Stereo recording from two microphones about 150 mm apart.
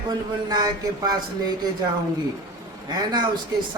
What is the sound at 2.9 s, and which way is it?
Speech, 30° right (ahead or behind).